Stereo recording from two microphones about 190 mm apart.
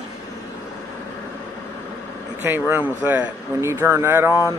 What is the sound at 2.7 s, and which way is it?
Speech, 10° right (ahead or behind).